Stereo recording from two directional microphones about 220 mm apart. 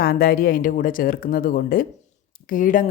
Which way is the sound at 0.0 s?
45° left (ahead or behind).